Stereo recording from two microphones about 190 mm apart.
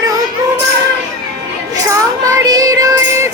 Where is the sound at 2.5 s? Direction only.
20° right (ahead or behind).